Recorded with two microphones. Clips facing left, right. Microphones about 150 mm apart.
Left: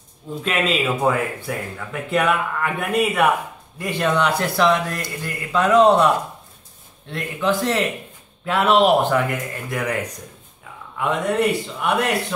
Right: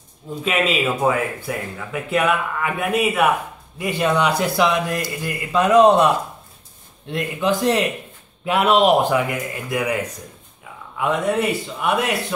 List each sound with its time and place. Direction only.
0.4 s speech: 5° right (ahead or behind)
7.1 s speech: 15° right (ahead or behind)
11.0 s speech: 5° right (ahead or behind)